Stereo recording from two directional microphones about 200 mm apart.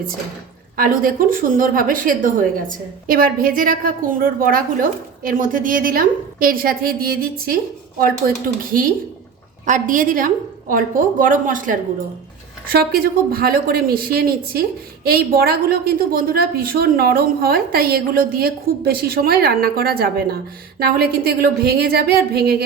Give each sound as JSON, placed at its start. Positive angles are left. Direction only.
{"t": 0.8, "sound": "a woman's voice", "side_deg": -45}
{"t": 9.6, "sound": "a woman's voice", "side_deg": -40}